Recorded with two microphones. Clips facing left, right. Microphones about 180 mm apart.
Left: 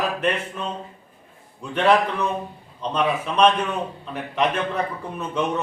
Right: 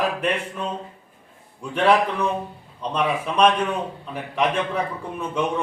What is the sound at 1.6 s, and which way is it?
A man's voice, 10° right (ahead or behind).